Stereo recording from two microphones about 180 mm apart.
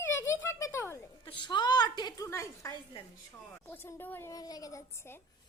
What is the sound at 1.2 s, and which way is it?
A woman's voice, 25° left (ahead or behind).